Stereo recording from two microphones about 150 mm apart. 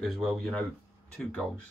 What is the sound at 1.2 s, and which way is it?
Speech, 5° left (ahead or behind).